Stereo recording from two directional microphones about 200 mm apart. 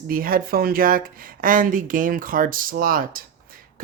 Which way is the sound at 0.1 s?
45° right (ahead or behind).